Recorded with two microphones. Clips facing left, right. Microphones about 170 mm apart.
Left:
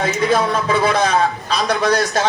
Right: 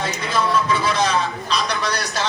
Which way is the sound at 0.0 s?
55° left (ahead or behind).